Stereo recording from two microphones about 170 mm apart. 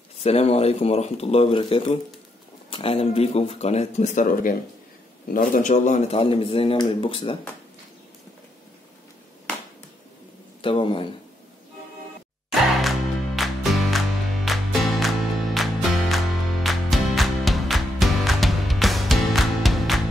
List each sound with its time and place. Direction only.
0.2 s speech: 40° left (ahead or behind)
10.6 s speech: 30° left (ahead or behind)
13.4 s music: centre (ahead or behind)